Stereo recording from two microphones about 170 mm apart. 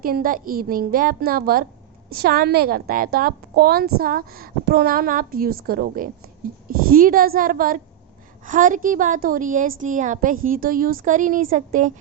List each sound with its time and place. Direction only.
0.0 s a woman's voice: 55° right (ahead or behind)